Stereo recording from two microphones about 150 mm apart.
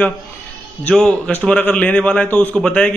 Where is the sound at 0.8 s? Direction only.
5° left (ahead or behind).